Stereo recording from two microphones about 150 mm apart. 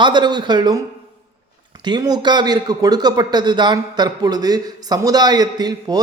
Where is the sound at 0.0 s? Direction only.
30° right (ahead or behind).